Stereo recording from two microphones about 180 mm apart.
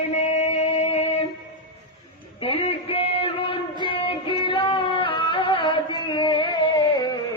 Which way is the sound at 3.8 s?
30° left (ahead or behind).